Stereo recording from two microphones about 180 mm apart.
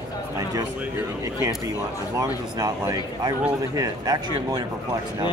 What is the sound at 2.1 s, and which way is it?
Speech, 20° right (ahead or behind).